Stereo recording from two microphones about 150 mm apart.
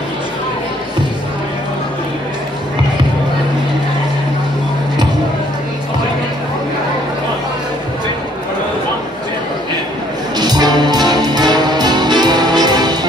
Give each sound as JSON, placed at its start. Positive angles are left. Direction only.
{"t": 10.3, "sound": "music", "side_deg": -25}